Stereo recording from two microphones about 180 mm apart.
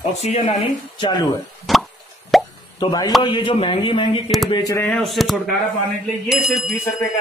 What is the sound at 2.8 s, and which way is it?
Speech, 20° left (ahead or behind).